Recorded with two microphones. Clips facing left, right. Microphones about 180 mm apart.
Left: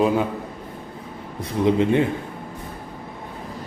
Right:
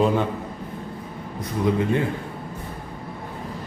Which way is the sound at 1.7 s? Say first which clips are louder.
Left 4 dB; 20° left (ahead or behind).